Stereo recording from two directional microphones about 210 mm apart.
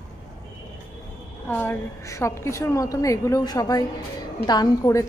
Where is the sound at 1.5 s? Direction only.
10° left (ahead or behind).